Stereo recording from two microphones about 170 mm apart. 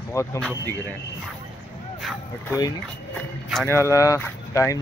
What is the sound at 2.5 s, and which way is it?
Speech, 25° left (ahead or behind).